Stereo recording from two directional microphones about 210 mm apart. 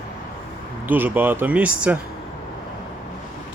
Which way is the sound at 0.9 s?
10° right (ahead or behind).